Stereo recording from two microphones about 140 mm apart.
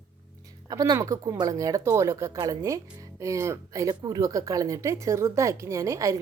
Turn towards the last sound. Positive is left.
turn(degrees=-20)  # may be behind; listen again after turning